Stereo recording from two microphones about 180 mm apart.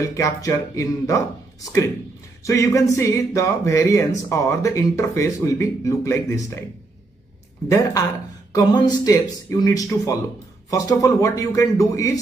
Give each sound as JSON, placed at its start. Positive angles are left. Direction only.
{"t": 0.0, "sound": "speech", "side_deg": 20}
{"t": 2.4, "sound": "speech", "side_deg": 15}
{"t": 7.6, "sound": "speech", "side_deg": 15}